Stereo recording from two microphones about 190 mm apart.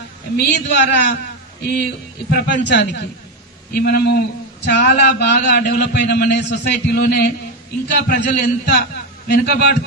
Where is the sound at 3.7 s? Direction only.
55° left (ahead or behind).